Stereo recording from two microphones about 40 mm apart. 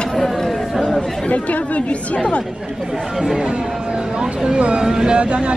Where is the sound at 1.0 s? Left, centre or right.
Left.